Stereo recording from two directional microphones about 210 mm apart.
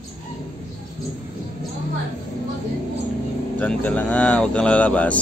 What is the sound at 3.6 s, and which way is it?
Speech, 5° left (ahead or behind).